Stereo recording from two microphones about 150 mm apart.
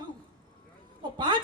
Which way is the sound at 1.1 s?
30° right (ahead or behind).